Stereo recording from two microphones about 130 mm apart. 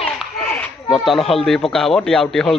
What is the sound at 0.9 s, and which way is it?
Speech, centre (ahead or behind).